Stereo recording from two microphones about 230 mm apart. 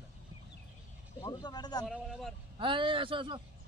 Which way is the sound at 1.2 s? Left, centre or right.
Centre.